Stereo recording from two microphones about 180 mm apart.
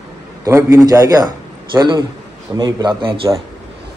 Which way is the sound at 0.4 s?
15° right (ahead or behind).